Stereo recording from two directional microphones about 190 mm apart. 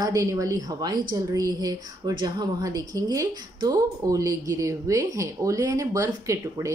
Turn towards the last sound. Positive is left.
turn(degrees=-15)  # may be behind; listen again after turning